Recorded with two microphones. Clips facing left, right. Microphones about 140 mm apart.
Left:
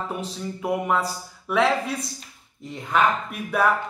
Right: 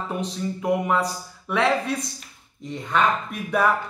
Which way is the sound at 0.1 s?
Centre (ahead or behind).